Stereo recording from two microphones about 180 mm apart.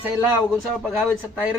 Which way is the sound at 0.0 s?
10° right (ahead or behind).